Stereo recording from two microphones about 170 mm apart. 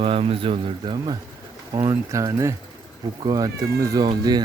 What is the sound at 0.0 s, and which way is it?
Speech, 35° right (ahead or behind).